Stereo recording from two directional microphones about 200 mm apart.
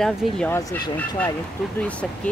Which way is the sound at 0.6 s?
15° left (ahead or behind).